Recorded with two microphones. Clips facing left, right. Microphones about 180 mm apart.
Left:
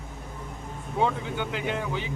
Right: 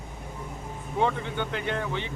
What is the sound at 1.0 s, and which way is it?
Speech, 5° left (ahead or behind).